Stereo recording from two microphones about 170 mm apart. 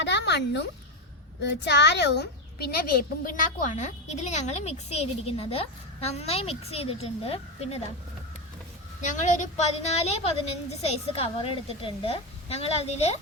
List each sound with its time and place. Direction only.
0.0 s a sound: 90° left
1.4 s speech: 90° left; by 7.8 s 35° left (ahead or behind)
9.0 s speech: 45° left (ahead or behind)